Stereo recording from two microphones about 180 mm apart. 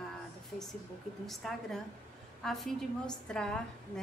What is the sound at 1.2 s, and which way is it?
A woman's voice, centre (ahead or behind).